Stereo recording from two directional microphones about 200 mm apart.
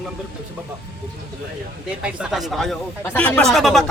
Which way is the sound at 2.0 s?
5° right (ahead or behind).